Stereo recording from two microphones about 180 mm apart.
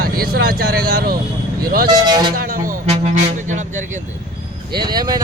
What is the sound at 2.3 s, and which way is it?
Speech, 50° right (ahead or behind).